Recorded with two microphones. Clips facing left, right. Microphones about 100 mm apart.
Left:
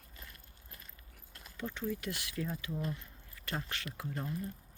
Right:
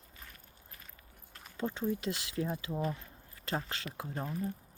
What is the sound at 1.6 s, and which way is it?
Speech, 30° right (ahead or behind).